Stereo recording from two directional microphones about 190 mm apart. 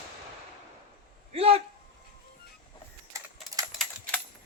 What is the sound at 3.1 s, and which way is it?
Typing, 15° right (ahead or behind).